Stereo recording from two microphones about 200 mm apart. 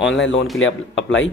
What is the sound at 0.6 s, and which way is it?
Speech, 70° left (ahead or behind).